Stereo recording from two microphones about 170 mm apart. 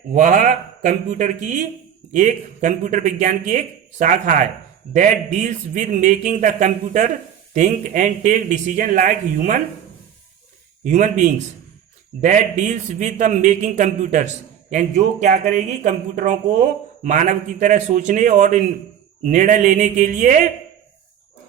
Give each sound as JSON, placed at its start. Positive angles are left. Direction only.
{"t": 0.1, "sound": "speech", "side_deg": -50}
{"t": 10.8, "sound": "speech", "side_deg": -45}